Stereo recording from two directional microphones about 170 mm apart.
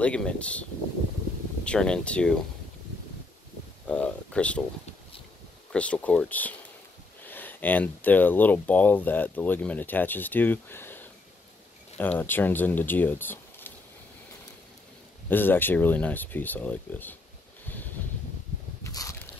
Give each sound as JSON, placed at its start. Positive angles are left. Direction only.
{"t": 0.0, "sound": "speech", "side_deg": 5}
{"t": 3.8, "sound": "a sound", "side_deg": 5}
{"t": 5.7, "sound": "speech", "side_deg": 5}
{"t": 15.2, "sound": "speech", "side_deg": 10}
{"t": 18.9, "sound": "biting", "side_deg": 20}